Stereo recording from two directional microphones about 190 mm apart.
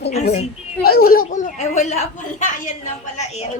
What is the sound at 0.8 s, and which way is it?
Speech, 55° left (ahead or behind).